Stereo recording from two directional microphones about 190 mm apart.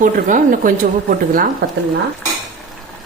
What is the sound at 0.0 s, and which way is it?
A woman's voice, 45° right (ahead or behind).